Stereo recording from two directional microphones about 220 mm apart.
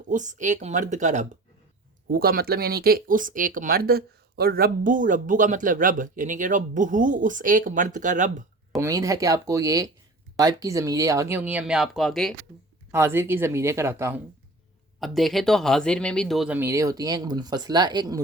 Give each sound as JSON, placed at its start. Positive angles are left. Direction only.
{"t": 0.1, "sound": "speech", "side_deg": -35}
{"t": 8.8, "sound": "speech", "side_deg": -15}
{"t": 12.9, "sound": "speech", "side_deg": -10}
{"t": 15.0, "sound": "speech", "side_deg": 0}